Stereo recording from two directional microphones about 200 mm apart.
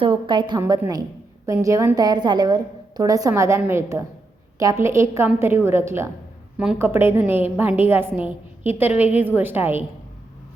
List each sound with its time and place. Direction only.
0.0 s a woman's voice: 25° right (ahead or behind)